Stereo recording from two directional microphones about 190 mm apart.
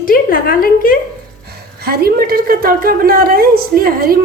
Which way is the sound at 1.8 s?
55° right (ahead or behind).